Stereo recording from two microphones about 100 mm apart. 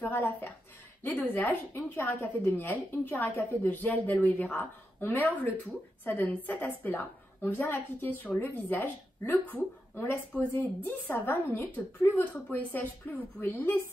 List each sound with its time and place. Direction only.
0.0 s a woman's voice: 20° left (ahead or behind)